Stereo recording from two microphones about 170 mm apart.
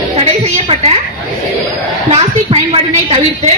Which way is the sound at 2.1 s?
40° right (ahead or behind).